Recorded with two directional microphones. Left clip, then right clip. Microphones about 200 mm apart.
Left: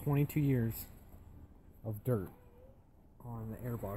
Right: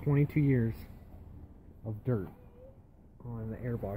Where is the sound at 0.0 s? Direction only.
35° left (ahead or behind).